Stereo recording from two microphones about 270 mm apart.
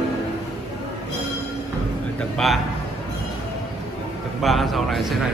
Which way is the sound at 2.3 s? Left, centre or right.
Centre.